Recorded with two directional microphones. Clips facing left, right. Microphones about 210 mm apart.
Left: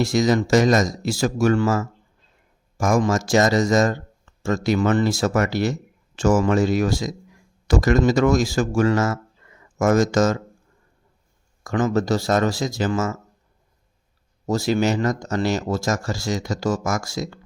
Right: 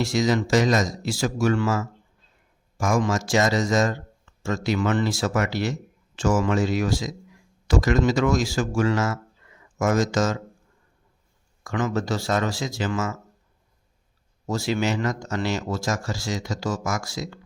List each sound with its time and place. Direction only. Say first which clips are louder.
0.0 s speech: left 3 dB; 45° left (ahead or behind)
11.6 s speech: left 5 dB; 40° left (ahead or behind)
14.4 s speech: left 4 dB; 40° left (ahead or behind)